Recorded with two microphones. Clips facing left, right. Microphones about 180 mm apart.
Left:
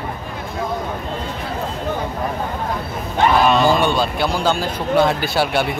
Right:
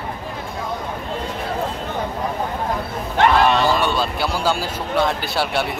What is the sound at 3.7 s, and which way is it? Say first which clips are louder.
Speech: left 3 dB; centre (ahead or behind).